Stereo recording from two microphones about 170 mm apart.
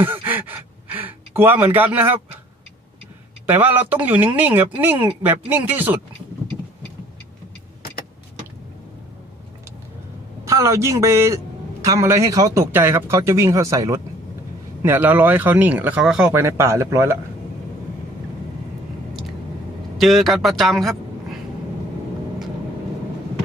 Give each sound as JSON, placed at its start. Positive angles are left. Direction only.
{"t": 0.0, "sound": "gasp", "side_deg": -10}
{"t": 3.4, "sound": "a man's voice", "side_deg": -10}
{"t": 10.4, "sound": "a man's voice", "side_deg": -20}
{"t": 20.0, "sound": "a man's voice", "side_deg": 0}